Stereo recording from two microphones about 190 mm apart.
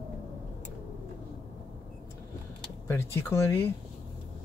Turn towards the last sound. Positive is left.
turn(degrees=10)  # may be behind; listen again after turning